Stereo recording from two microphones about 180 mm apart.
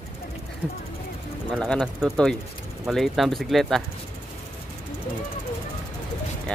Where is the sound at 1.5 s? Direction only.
5° left (ahead or behind).